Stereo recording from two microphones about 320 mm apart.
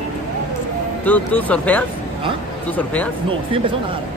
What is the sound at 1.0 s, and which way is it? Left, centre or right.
Speech, centre.